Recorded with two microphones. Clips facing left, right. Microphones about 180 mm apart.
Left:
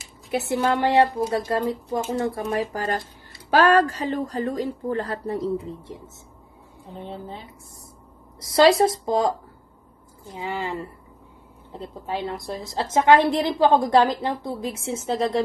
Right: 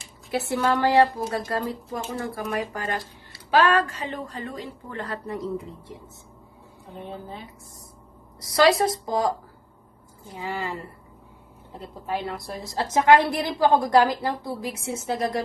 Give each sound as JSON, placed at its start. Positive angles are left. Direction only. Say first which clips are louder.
{"t": 0.3, "sound": "a woman's voice", "louder": "left 1 dB", "side_deg": 20}
{"t": 7.1, "sound": "a woman's voice", "louder": "left 1 dB", "side_deg": 30}
{"t": 10.3, "sound": "a woman's voice", "louder": "left 2 dB", "side_deg": 20}